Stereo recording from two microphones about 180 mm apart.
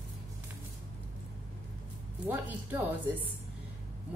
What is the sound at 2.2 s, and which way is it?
Speech, 10° right (ahead or behind).